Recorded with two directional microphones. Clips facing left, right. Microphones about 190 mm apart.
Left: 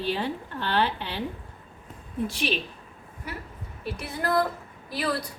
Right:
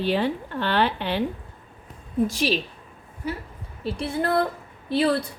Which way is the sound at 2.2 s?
40° right (ahead or behind).